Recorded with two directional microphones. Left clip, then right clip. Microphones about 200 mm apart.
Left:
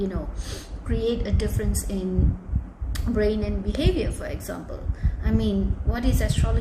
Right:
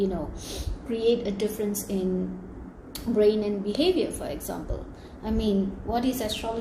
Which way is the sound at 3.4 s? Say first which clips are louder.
Right 2 dB; 45° left (ahead or behind).